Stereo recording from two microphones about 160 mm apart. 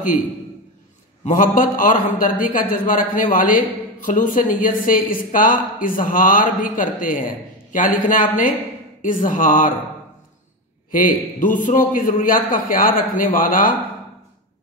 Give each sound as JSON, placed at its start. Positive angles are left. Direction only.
{"t": 1.2, "sound": "a woman's voice", "side_deg": 55}
{"t": 10.9, "sound": "a woman's voice", "side_deg": 55}